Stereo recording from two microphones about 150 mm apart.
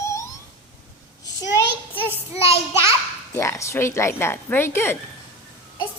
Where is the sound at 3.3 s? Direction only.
20° left (ahead or behind).